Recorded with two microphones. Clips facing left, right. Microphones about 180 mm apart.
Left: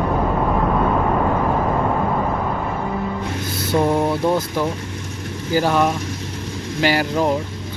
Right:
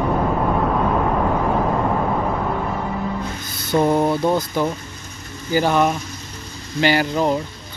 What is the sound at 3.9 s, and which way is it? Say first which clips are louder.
Speech: even; 5° right (ahead or behind).